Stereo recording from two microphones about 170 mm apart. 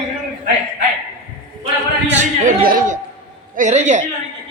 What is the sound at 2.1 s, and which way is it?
Speech, 45° right (ahead or behind).